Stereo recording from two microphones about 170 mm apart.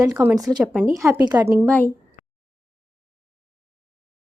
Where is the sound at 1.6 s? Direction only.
10° left (ahead or behind).